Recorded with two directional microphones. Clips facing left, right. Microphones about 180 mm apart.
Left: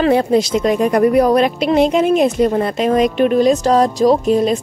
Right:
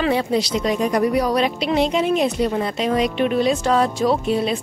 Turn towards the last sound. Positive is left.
turn(degrees=40)  # may be behind; listen again after turning